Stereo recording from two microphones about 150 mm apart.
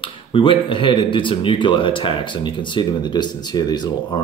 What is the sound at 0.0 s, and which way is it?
Speech, 35° left (ahead or behind).